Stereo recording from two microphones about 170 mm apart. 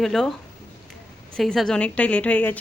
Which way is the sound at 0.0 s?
Centre (ahead or behind).